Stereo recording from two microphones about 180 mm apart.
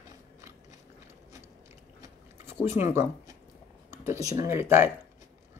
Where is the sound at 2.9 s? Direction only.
15° right (ahead or behind).